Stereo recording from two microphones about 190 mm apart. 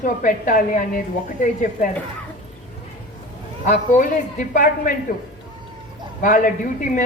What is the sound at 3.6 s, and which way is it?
A man's voice, 40° left (ahead or behind).